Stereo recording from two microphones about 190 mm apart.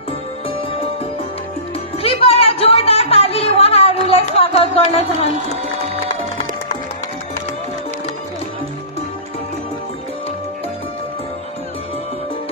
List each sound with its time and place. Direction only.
2.0 s music: 30° left (ahead or behind)